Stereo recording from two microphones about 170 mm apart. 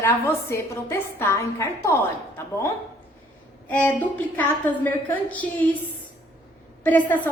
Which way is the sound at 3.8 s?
10° left (ahead or behind).